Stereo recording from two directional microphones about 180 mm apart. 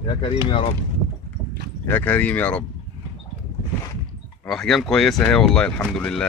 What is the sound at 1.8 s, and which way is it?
Speech, 10° left (ahead or behind).